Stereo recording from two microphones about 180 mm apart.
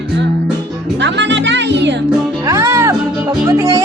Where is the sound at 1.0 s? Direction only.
80° right.